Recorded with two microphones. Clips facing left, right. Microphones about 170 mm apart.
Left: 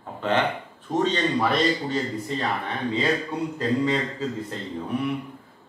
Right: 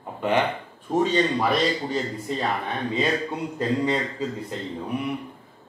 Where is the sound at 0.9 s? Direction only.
10° right (ahead or behind).